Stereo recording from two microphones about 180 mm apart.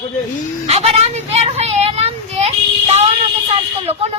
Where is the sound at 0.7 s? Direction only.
35° right (ahead or behind).